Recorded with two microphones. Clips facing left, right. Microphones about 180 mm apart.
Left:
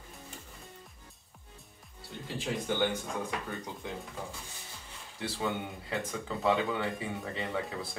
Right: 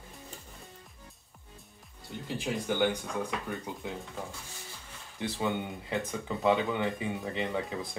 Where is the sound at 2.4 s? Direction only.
15° right (ahead or behind).